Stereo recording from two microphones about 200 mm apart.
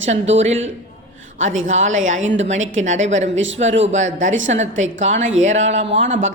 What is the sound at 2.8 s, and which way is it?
Speech, 35° right (ahead or behind).